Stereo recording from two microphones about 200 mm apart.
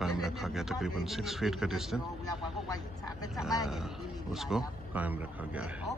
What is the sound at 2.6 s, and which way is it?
Speech, 20° left (ahead or behind).